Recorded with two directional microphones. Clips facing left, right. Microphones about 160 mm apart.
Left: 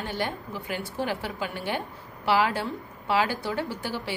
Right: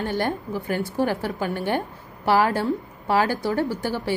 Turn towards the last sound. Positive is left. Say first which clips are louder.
# right 7 dB
turn(degrees=-45)  # may be behind; listen again after turning